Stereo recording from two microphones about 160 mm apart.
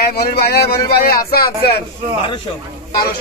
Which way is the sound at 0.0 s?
80° left.